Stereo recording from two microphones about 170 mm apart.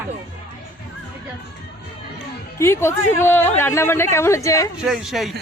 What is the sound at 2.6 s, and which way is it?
Speech, 15° left (ahead or behind).